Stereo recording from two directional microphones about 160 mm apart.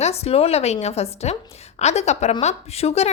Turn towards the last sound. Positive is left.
turn(degrees=40)  # may be behind; listen again after turning